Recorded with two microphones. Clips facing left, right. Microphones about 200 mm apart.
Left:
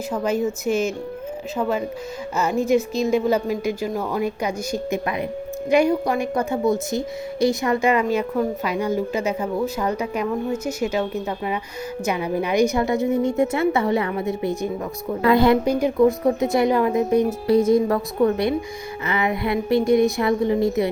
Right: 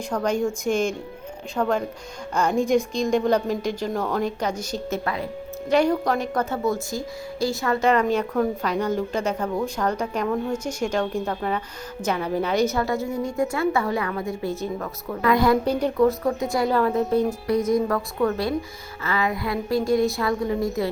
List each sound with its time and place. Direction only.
0.1 s a woman's voice: 5° left (ahead or behind)
15.1 s a woman's voice: 25° left (ahead or behind)
15.6 s a woman's voice: 10° left (ahead or behind)
16.2 s a woman's voice: 20° left (ahead or behind)
17.4 s a woman's voice: 30° left (ahead or behind)